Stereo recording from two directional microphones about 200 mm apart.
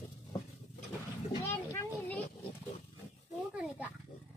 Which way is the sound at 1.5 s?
10° left (ahead or behind).